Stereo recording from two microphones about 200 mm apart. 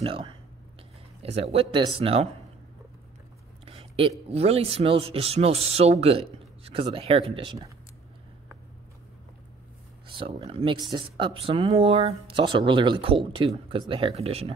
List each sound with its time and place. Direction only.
0.0 s speech: 25° right (ahead or behind)
3.6 s a sound: 25° right (ahead or behind)
4.3 s speech: 30° right (ahead or behind)
10.0 s speech: 25° right (ahead or behind)